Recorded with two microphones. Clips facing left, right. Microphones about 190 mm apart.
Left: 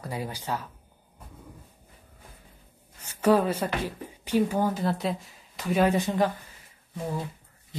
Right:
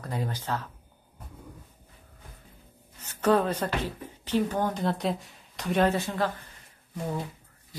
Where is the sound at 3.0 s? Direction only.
10° left (ahead or behind).